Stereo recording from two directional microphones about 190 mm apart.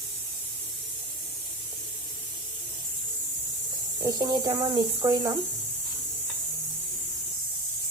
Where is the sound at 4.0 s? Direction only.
20° right (ahead or behind).